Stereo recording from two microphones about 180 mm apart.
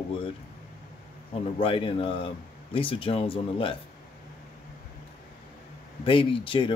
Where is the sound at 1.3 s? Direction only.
30° left (ahead or behind).